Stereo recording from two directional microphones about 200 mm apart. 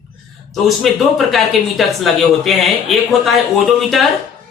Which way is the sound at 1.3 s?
Centre (ahead or behind).